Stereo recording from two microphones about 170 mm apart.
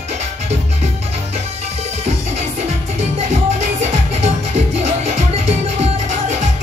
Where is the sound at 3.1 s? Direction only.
40° right (ahead or behind).